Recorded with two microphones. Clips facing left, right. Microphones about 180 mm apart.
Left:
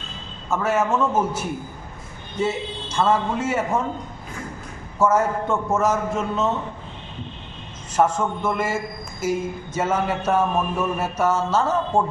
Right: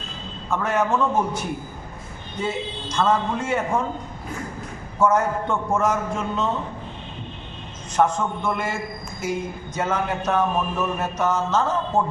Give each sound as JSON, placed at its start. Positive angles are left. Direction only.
{"t": 0.5, "sound": "a man's voice", "side_deg": 5}
{"t": 3.0, "sound": "a man's voice", "side_deg": 5}
{"t": 4.9, "sound": "a man's voice", "side_deg": 5}
{"t": 7.9, "sound": "a man's voice", "side_deg": 5}